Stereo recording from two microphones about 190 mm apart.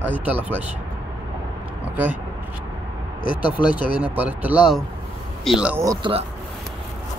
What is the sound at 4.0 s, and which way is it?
Speech, 10° right (ahead or behind).